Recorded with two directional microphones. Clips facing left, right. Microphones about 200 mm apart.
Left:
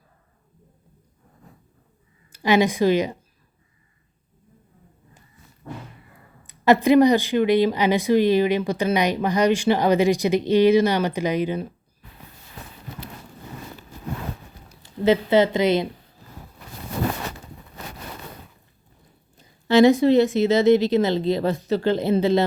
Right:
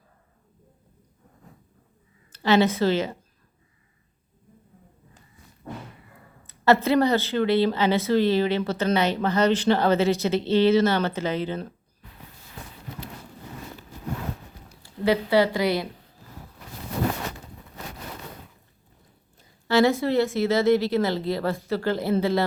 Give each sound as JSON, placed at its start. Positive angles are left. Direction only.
{"t": 2.3, "sound": "speech", "side_deg": 15}
{"t": 6.5, "sound": "speech", "side_deg": 15}
{"t": 14.8, "sound": "speech", "side_deg": 20}
{"t": 19.4, "sound": "a woman's voice", "side_deg": 20}